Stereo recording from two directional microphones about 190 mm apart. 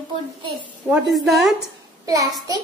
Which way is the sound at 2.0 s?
20° right (ahead or behind).